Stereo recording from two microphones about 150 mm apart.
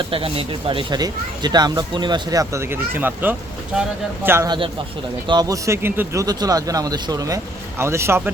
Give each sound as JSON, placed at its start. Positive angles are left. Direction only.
{"t": 0.0, "sound": "speech", "side_deg": -35}
{"t": 4.4, "sound": "speech", "side_deg": -30}